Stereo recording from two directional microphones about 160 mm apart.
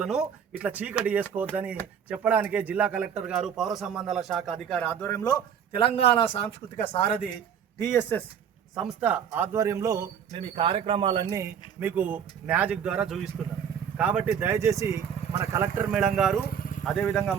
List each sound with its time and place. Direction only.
0.0 s a man's voice: 5° right (ahead or behind); by 5.4 s 20° left (ahead or behind)
5.7 s speech: 35° left (ahead or behind)
7.8 s speech: 15° left (ahead or behind)
8.7 s a man's voice: 5° right (ahead or behind); by 10.0 s 20° right (ahead or behind)
10.3 s a man's voice: 35° right (ahead or behind); by 15.9 s 15° right (ahead or behind)
15.9 s a man's voice: 5° right (ahead or behind)
16.5 s vehicle: 60° left (ahead or behind)
16.8 s a man's voice: 5° left (ahead or behind)